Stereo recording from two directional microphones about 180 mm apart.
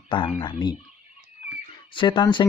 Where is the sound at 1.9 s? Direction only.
25° left (ahead or behind).